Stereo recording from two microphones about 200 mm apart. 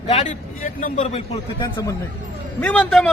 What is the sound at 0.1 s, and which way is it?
A man's voice, 35° left (ahead or behind).